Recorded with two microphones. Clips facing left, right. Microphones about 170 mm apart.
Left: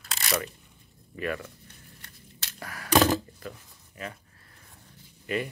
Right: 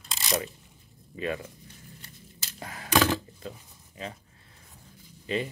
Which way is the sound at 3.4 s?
25° right (ahead or behind).